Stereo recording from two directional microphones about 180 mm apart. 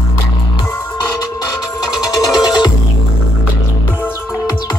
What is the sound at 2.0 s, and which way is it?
Music, 25° left (ahead or behind).